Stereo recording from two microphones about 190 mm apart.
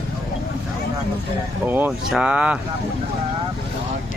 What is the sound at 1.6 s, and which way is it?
Speech, 10° right (ahead or behind).